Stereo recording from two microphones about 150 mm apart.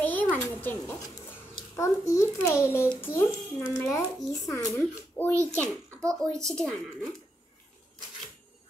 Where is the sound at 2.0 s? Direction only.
20° left (ahead or behind).